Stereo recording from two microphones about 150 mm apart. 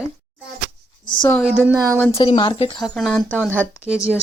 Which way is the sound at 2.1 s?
35° left (ahead or behind).